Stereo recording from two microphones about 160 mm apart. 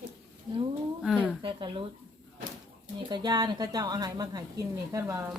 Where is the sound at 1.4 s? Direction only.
30° right (ahead or behind).